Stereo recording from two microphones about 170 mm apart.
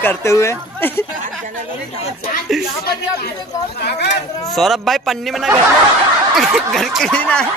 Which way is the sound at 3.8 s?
75° left (ahead or behind).